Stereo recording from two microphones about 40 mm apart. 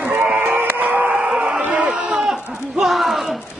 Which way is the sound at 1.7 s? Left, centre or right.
Right.